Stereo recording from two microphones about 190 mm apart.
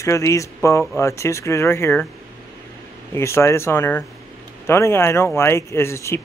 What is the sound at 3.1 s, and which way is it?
Speech, 15° left (ahead or behind).